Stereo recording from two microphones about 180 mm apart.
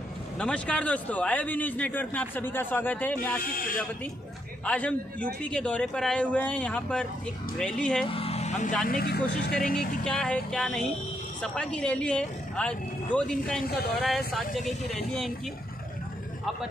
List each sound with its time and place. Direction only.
0.4 s speech: 5° left (ahead or behind)
4.6 s a man's voice: 5° left (ahead or behind)
8.1 s vehicle: 30° left (ahead or behind)
8.8 s speech: 55° left (ahead or behind)
10.0 s a man's voice: 5° left (ahead or behind)
13.7 s speech: 60° left (ahead or behind)
14.0 s a man's voice: centre (ahead or behind)